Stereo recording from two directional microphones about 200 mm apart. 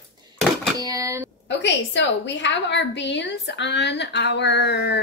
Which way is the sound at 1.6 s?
60° left (ahead or behind).